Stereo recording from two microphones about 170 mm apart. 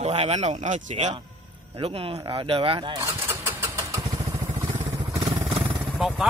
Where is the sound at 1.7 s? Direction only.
30° right (ahead or behind).